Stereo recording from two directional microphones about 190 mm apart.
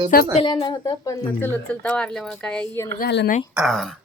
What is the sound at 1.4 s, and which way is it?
Speech, 5° left (ahead or behind).